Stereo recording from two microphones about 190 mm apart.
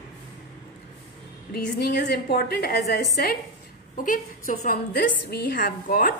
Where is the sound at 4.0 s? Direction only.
45° left (ahead or behind).